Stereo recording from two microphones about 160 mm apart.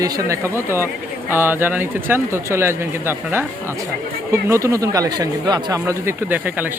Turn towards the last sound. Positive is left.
turn(degrees=-10)  # may be behind; listen again after turning